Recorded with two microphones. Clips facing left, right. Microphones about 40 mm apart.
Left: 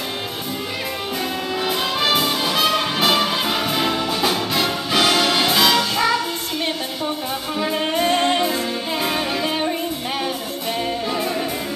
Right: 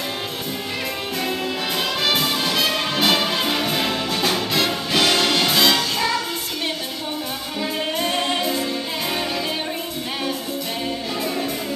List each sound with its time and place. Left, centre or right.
2.0 s brass instrument: centre
5.8 s music: centre
7.5 s music: centre